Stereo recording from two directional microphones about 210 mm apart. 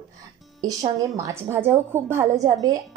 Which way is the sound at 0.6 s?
20° right (ahead or behind).